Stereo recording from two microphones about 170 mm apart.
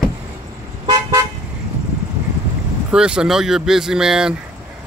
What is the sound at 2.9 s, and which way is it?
Speech, 5° right (ahead or behind).